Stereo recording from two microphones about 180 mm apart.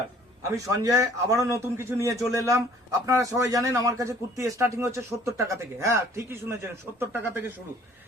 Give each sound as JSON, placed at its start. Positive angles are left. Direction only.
{"t": 0.5, "sound": "a man's voice", "side_deg": -20}